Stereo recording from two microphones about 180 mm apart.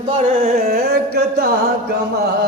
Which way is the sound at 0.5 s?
60° right (ahead or behind).